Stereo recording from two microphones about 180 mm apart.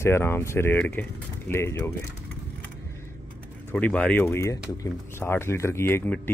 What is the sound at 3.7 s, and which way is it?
Speech, 5° left (ahead or behind).